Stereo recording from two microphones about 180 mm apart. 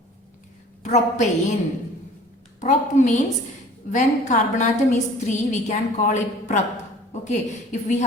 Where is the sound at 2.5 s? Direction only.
40° left (ahead or behind).